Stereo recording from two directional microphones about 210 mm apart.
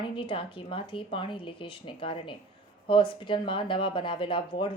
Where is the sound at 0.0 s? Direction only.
25° left (ahead or behind).